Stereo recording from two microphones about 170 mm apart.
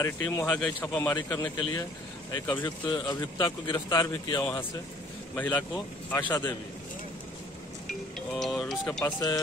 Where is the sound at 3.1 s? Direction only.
15° left (ahead or behind).